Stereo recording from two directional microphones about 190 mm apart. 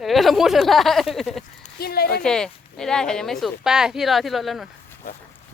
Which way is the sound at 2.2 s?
5° left (ahead or behind).